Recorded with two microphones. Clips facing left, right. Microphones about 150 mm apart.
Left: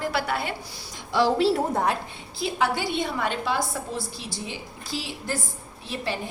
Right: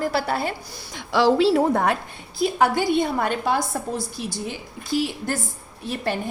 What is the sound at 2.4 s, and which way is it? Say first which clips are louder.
A woman's voice: right 5 dB; 45° right (ahead or behind).